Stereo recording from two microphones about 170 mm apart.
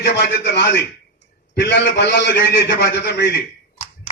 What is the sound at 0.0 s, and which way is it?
A man's voice, 80° left.